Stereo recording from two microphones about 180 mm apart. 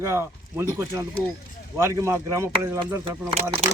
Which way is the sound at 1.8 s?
15° right (ahead or behind).